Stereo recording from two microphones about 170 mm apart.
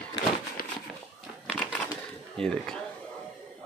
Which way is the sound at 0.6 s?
55° left (ahead or behind).